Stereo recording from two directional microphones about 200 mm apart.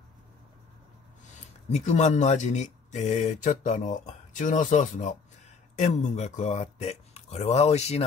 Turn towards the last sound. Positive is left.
turn(degrees=35)  # may be behind; listen again after turning